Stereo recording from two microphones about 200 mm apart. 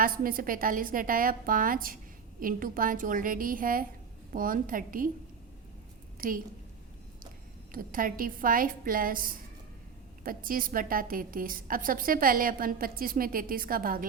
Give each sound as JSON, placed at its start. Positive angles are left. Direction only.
{"t": 0.0, "sound": "a woman's voice", "side_deg": -45}
{"t": 6.1, "sound": "a woman's voice", "side_deg": -45}
{"t": 7.7, "sound": "a woman's voice", "side_deg": -45}